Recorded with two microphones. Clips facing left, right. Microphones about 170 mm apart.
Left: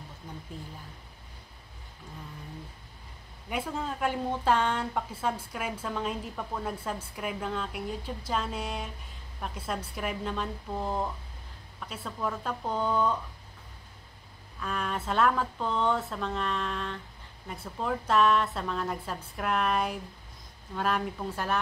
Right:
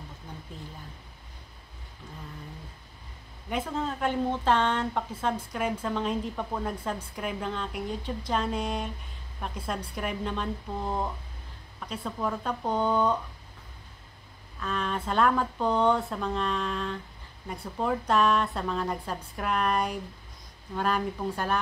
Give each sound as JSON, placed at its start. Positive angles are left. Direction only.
{"t": 3.4, "sound": "a woman's voice", "side_deg": 10}
{"t": 12.0, "sound": "speech", "side_deg": -10}
{"t": 12.6, "sound": "speech", "side_deg": -20}
{"t": 14.6, "sound": "a woman's voice", "side_deg": 10}